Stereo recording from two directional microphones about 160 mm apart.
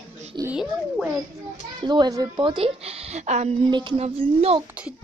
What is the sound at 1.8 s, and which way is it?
A woman's voice, 30° right (ahead or behind).